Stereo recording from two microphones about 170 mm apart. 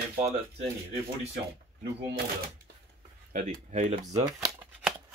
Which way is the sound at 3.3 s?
45° right (ahead or behind).